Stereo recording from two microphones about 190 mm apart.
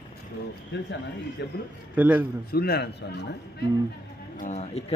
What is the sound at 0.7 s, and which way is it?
Speech, 60° left (ahead or behind).